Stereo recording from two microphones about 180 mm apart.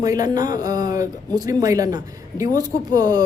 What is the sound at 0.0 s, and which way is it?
A man's voice, 20° right (ahead or behind).